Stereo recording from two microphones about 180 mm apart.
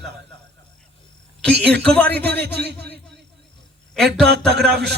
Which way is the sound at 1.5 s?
65° right (ahead or behind).